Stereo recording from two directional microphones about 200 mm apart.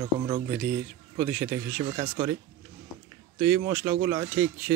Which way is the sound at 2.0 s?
35° right (ahead or behind).